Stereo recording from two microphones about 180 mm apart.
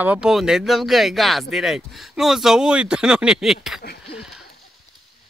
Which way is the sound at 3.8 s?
60° left (ahead or behind).